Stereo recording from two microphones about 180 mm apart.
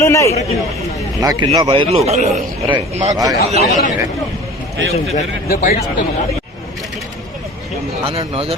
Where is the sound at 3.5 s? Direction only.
40° right (ahead or behind).